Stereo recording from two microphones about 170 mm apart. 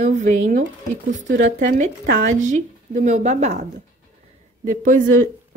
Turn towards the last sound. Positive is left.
turn(degrees=-55)  # may be behind; listen again after turning